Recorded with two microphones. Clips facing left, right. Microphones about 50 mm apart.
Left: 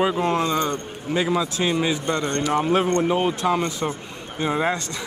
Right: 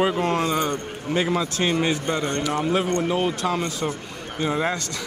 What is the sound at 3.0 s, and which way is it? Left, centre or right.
Speech, centre.